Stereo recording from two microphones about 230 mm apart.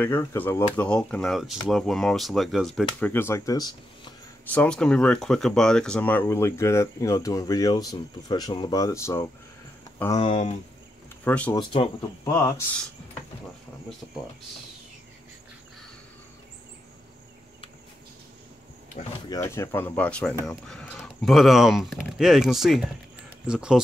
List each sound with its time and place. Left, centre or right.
0.0 s speech: centre
4.5 s speech: centre
10.2 s speech: left
11.2 s speech: centre
11.5 s speech: centre
19.2 s speech: centre